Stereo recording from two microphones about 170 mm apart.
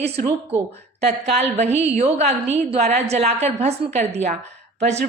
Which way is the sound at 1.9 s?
40° right (ahead or behind).